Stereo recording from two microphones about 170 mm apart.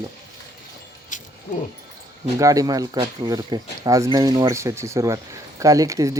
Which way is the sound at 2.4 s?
20° right (ahead or behind).